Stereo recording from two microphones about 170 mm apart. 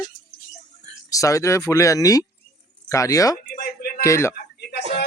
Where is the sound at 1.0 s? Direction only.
20° left (ahead or behind).